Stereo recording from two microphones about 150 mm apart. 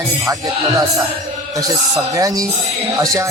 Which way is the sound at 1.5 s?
25° right (ahead or behind).